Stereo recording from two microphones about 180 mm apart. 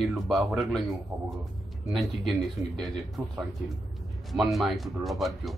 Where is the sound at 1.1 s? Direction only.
15° right (ahead or behind).